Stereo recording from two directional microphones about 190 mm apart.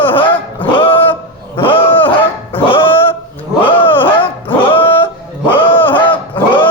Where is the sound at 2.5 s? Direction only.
25° left (ahead or behind).